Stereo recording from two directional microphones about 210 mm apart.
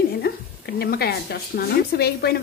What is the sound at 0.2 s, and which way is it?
Speech, 50° left (ahead or behind).